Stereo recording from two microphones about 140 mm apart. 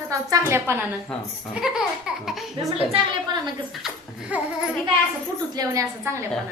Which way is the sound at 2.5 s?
40° right (ahead or behind).